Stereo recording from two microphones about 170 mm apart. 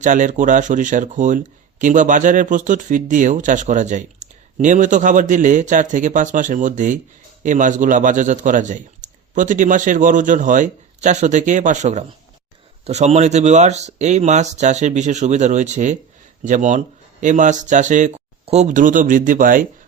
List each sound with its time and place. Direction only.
0.0 s speech: 45° right (ahead or behind)